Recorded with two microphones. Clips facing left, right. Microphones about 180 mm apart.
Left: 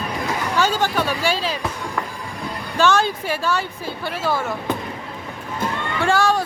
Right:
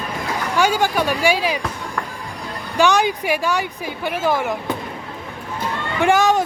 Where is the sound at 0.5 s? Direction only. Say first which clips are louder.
Right 3 dB; 10° right (ahead or behind).